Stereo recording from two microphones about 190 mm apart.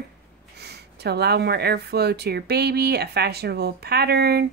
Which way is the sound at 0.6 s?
60° right (ahead or behind).